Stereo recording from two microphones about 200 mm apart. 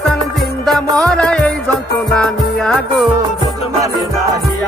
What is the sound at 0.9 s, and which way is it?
Music, 5° left (ahead or behind).